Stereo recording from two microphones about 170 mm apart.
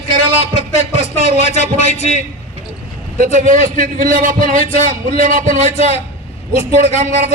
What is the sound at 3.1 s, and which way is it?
A man's voice, 50° right (ahead or behind).